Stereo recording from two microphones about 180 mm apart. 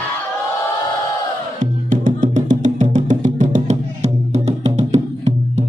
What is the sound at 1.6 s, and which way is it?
Music, 45° right (ahead or behind).